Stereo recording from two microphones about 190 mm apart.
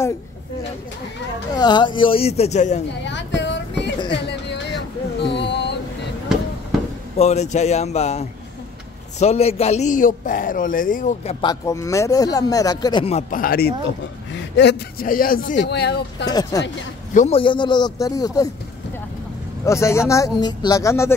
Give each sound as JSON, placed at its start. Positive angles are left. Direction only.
{"t": 1.5, "sound": "speech", "side_deg": 20}
{"t": 3.1, "sound": "a sound", "side_deg": 70}
{"t": 7.2, "sound": "a man's voice", "side_deg": 35}
{"t": 11.4, "sound": "speech", "side_deg": 15}
{"t": 13.3, "sound": "speech", "side_deg": 50}
{"t": 15.0, "sound": "a man's voice", "side_deg": 50}
{"t": 15.6, "sound": "speech", "side_deg": 60}
{"t": 16.3, "sound": "speech", "side_deg": 20}
{"t": 17.1, "sound": "a man's voice", "side_deg": 40}
{"t": 17.4, "sound": "speech", "side_deg": 25}
{"t": 19.6, "sound": "speech", "side_deg": 15}